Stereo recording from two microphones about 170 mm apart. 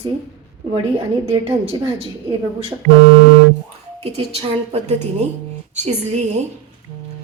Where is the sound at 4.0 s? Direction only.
35° right (ahead or behind).